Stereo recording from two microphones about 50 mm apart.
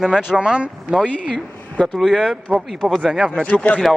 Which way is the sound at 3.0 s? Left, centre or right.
Centre.